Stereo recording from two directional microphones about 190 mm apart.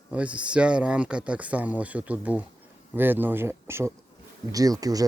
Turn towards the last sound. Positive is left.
turn(degrees=-20)  # may be behind; listen again after turning